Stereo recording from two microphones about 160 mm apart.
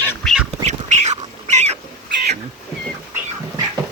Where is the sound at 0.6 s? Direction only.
45° right (ahead or behind).